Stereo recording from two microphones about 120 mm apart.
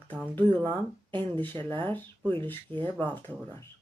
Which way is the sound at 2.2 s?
45° right (ahead or behind).